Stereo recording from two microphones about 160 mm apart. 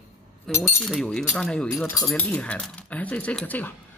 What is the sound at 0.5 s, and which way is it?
Speech, 15° left (ahead or behind).